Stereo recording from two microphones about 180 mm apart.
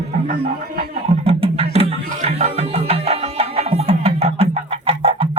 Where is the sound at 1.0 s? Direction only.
35° right (ahead or behind).